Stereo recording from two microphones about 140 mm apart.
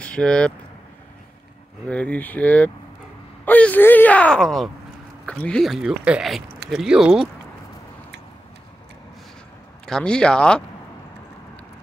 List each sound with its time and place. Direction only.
0.0 s speech: 5° left (ahead or behind)
1.9 s speech: 10° left (ahead or behind)
9.8 s speech: 5° left (ahead or behind)